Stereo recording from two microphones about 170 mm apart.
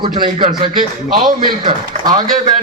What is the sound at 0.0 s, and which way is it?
Speech, 30° right (ahead or behind).